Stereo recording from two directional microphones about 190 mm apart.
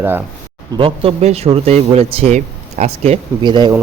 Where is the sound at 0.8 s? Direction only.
30° right (ahead or behind).